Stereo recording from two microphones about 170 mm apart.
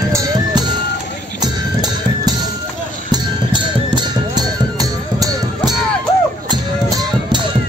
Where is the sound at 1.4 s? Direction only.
25° right (ahead or behind).